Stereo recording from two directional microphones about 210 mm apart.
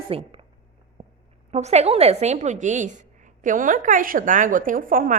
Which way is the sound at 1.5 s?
30° right (ahead or behind).